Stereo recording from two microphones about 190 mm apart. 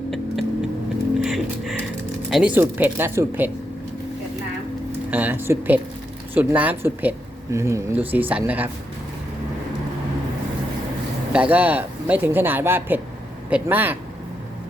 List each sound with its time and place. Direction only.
0.1 s vehicle: centre (ahead or behind)
1.2 s music: centre (ahead or behind)
2.3 s speech: 5° right (ahead or behind)
5.1 s speech: 10° right (ahead or behind)
11.3 s speech: 5° right (ahead or behind)